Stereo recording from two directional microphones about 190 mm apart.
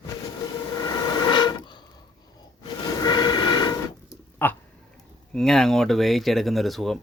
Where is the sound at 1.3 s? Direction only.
25° left (ahead or behind).